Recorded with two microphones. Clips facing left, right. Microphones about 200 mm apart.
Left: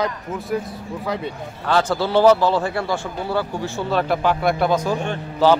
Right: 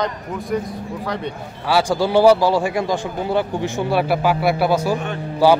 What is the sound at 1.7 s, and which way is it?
A man's voice, 10° right (ahead or behind).